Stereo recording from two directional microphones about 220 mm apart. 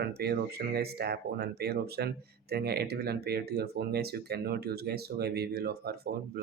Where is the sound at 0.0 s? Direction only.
45° right (ahead or behind).